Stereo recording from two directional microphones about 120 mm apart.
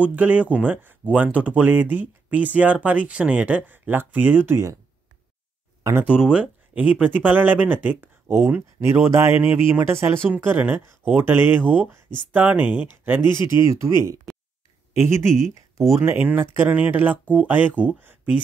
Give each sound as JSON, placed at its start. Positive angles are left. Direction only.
{"t": 0.0, "sound": "speech", "side_deg": -15}
{"t": 6.0, "sound": "speech", "side_deg": -5}
{"t": 16.1, "sound": "speech", "side_deg": -15}